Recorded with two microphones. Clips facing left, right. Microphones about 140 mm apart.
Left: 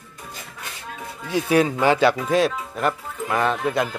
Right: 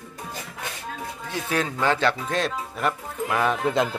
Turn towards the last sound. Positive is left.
turn(degrees=-20)  # may be behind; listen again after turning